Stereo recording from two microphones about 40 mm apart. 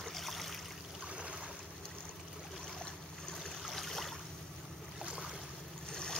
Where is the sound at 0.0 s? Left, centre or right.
Centre.